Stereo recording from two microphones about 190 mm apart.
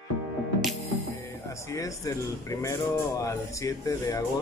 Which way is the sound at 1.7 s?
15° left (ahead or behind).